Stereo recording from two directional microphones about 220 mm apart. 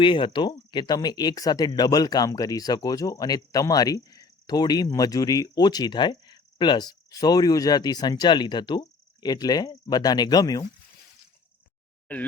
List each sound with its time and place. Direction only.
0.0 s speech: 20° left (ahead or behind)